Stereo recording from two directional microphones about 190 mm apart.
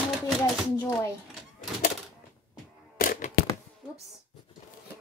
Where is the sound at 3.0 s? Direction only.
50° left (ahead or behind).